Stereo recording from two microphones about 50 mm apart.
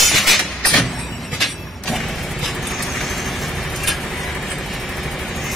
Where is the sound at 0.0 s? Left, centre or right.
Centre.